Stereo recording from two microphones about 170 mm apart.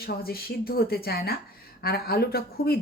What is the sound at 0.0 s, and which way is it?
Speech, 65° left (ahead or behind).